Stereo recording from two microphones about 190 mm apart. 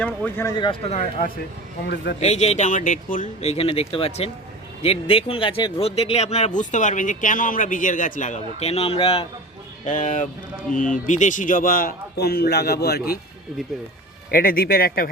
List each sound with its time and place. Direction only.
0.0 s speech: 10° left (ahead or behind)
0.5 s speech: 25° left (ahead or behind)
9.8 s a man's voice: 40° left (ahead or behind); by 13.1 s 55° left (ahead or behind)
14.3 s a man's voice: 50° left (ahead or behind)